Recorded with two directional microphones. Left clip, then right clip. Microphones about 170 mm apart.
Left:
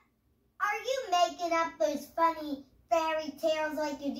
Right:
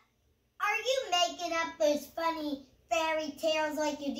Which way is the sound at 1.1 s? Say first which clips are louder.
Left 2 dB; 20° right (ahead or behind).